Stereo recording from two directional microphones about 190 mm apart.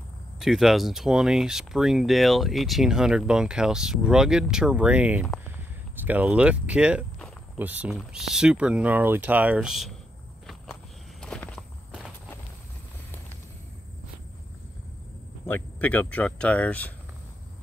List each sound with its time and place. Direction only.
0.4 s speech: centre (ahead or behind)
10.4 s walk: 5° left (ahead or behind)
15.4 s speech: 10° left (ahead or behind)